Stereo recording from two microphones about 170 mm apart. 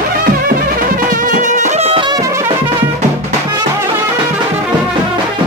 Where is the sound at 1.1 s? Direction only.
50° right (ahead or behind); by 2.4 s 20° right (ahead or behind).